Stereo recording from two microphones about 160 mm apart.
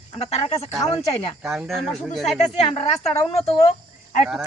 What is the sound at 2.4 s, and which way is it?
Speech, 40° left (ahead or behind).